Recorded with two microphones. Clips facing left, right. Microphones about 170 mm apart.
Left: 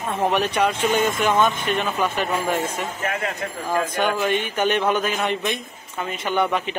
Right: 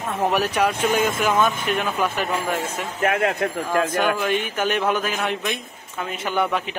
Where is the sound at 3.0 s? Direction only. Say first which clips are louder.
Right 10 dB; 65° right (ahead or behind).